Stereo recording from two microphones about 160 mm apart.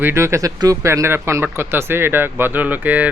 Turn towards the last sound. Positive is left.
turn(degrees=-10)  # may be behind; listen again after turning